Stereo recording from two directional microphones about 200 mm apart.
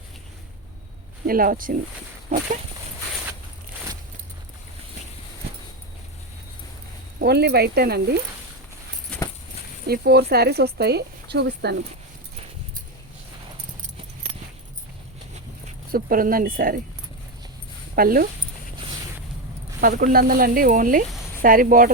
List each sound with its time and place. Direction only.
1.3 s speech: 45° right (ahead or behind)
7.2 s speech: 55° right (ahead or behind)
9.1 s a sound: 5° left (ahead or behind)
9.8 s speech: 50° right (ahead or behind)
15.3 s a sound: 40° right (ahead or behind)
17.9 s speech: 45° right (ahead or behind)
19.8 s speech: 45° right (ahead or behind)